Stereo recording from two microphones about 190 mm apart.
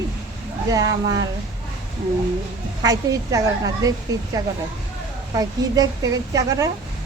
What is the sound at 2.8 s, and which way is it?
Speech, 20° right (ahead or behind).